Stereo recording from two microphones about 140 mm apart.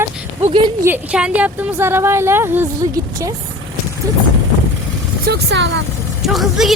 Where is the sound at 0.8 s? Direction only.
10° right (ahead or behind).